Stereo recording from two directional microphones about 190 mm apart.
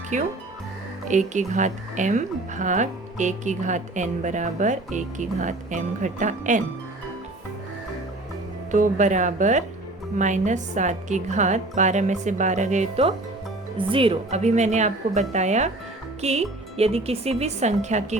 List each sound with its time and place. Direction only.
0.1 s speech: 40° right (ahead or behind)
8.7 s speech: 40° right (ahead or behind)